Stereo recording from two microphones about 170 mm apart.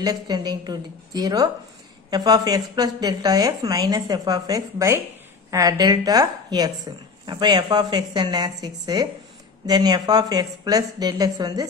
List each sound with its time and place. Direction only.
0.0 s a woman's voice: 25° right (ahead or behind)